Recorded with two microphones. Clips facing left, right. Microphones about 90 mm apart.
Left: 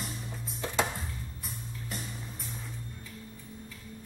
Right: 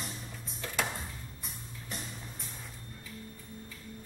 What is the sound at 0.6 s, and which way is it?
Music, 20° left (ahead or behind).